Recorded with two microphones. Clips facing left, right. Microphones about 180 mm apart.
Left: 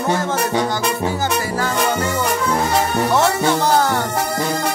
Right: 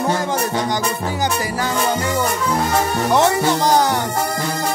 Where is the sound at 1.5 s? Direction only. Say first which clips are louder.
Left 1 dB; 15° right (ahead or behind).